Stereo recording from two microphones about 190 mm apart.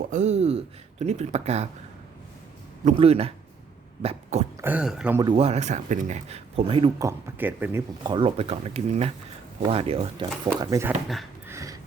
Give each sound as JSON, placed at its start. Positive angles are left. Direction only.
{"t": 0.1, "sound": "speech", "side_deg": -35}
{"t": 2.8, "sound": "speech", "side_deg": -30}
{"t": 4.0, "sound": "dog", "side_deg": -35}
{"t": 4.6, "sound": "speech", "side_deg": -5}
{"t": 5.2, "sound": "speech", "side_deg": -30}
{"t": 7.0, "sound": "speech", "side_deg": -10}
{"t": 8.1, "sound": "speech", "side_deg": -30}
{"t": 10.6, "sound": "speech", "side_deg": -15}
{"t": 11.4, "sound": "a sound", "side_deg": -15}